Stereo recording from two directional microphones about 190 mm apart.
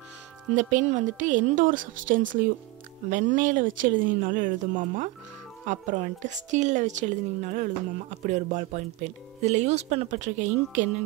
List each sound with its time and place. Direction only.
0.6 s speech: 40° right (ahead or behind)